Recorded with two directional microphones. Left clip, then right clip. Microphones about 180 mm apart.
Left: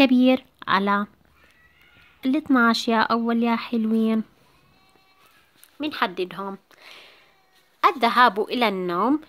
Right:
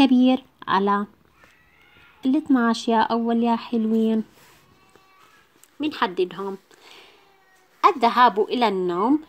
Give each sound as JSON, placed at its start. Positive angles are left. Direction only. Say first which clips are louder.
{"t": 0.0, "sound": "speech", "louder": "even", "side_deg": 20}
{"t": 2.2, "sound": "speech", "louder": "left 1 dB", "side_deg": 20}
{"t": 5.8, "sound": "a sound", "louder": "right 2 dB", "side_deg": 15}
{"t": 7.8, "sound": "speech", "louder": "right 1 dB", "side_deg": 20}